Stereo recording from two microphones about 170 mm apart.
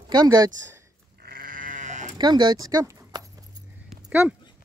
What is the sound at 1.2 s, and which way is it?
Sheep, 55° right (ahead or behind).